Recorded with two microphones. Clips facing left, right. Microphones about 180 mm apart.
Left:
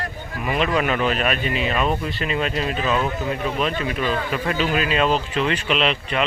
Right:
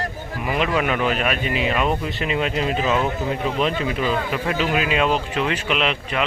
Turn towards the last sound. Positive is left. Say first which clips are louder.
# left 1 dB
turn(degrees=-10)  # may be behind; listen again after turning